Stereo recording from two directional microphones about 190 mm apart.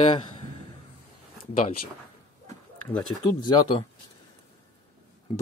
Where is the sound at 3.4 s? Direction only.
25° left (ahead or behind).